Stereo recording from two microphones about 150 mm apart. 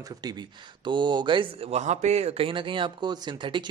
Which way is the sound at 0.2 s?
25° right (ahead or behind).